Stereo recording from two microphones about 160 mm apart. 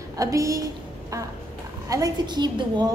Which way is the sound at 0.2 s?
20° right (ahead or behind).